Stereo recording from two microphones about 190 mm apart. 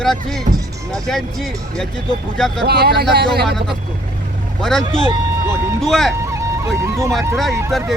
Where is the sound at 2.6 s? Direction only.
55° right (ahead or behind).